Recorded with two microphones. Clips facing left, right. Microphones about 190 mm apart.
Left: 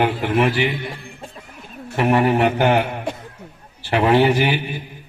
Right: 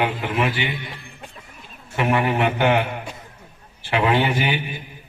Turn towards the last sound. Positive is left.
turn(degrees=40)  # may be behind; listen again after turning